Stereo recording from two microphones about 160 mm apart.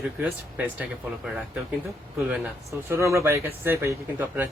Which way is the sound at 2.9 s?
20° right (ahead or behind).